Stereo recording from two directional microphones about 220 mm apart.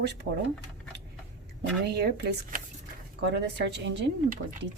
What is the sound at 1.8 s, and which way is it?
Speech, 50° right (ahead or behind).